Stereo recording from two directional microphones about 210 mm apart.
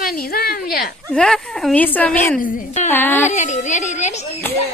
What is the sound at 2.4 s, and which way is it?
Speech, 40° left (ahead or behind).